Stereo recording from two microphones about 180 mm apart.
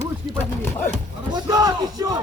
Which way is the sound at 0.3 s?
10° left (ahead or behind).